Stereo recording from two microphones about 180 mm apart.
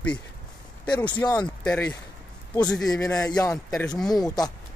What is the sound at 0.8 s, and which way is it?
Speech, 25° left (ahead or behind).